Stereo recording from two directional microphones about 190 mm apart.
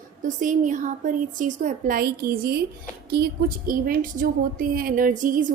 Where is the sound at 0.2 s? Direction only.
45° right (ahead or behind).